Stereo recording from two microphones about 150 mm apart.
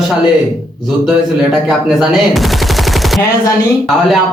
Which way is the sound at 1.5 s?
Centre (ahead or behind).